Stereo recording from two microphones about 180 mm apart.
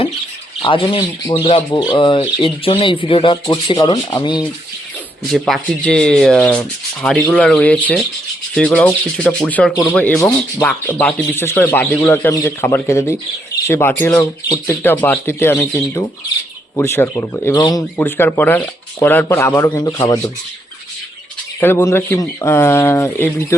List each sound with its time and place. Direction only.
0.6 s speech: 30° left (ahead or behind)
5.3 s speech: 5° left (ahead or behind)
16.7 s speech: 15° left (ahead or behind)
17.9 s speech: 10° left (ahead or behind)
21.6 s speech: 15° left (ahead or behind)